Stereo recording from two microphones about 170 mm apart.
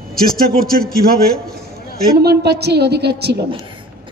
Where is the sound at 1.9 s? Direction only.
65° right (ahead or behind).